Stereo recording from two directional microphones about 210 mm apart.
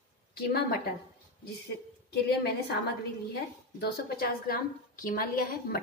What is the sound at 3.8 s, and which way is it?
A woman's voice, 45° left (ahead or behind).